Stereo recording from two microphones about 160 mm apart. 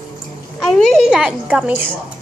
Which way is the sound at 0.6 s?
5° left (ahead or behind).